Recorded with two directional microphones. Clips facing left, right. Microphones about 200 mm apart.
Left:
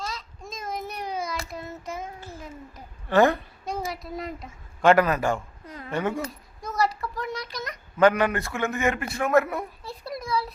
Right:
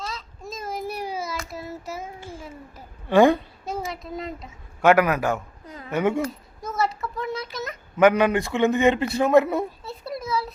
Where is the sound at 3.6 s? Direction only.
Centre (ahead or behind).